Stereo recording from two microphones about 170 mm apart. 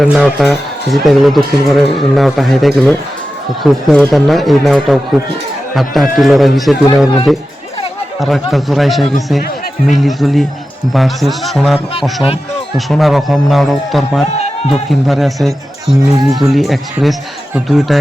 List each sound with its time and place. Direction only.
0.0 s speech: centre (ahead or behind)
8.2 s speech: centre (ahead or behind)
14.3 s music: 40° left (ahead or behind)
14.7 s speech: centre (ahead or behind)